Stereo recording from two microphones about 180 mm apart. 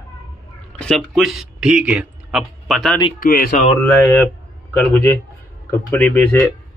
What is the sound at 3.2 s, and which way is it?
Speech, 50° left (ahead or behind).